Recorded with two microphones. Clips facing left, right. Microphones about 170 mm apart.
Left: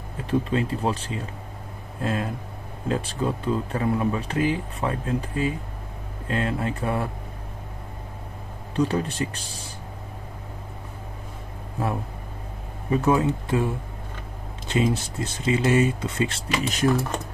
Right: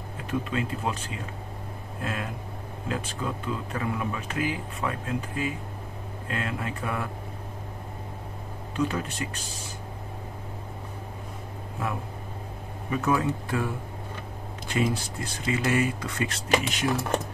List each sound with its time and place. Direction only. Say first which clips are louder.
0.3 s speech: left 5 dB; 30° left (ahead or behind)
2.0 s a sound: left 6 dB; 30° left (ahead or behind)
2.9 s speech: left 6 dB; 35° left (ahead or behind)
8.7 s speech: left 5 dB; 35° left (ahead or behind)
12.9 s speech: left 5 dB; 25° left (ahead or behind)
14.7 s speech: left 4 dB; 25° left (ahead or behind)
16.6 s speech: left 6 dB; 40° left (ahead or behind)